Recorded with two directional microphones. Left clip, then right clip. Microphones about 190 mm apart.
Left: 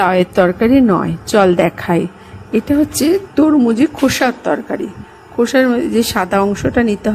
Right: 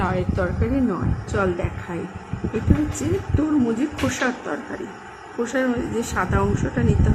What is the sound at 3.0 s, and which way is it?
Speech, 65° left (ahead or behind).